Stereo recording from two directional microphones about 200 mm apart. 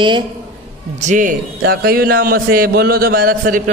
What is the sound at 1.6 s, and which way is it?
A man's voice, 50° right (ahead or behind).